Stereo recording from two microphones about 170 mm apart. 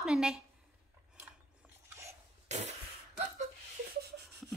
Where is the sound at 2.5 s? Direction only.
40° right (ahead or behind).